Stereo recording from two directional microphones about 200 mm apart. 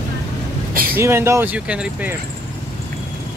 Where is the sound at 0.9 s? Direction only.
10° right (ahead or behind).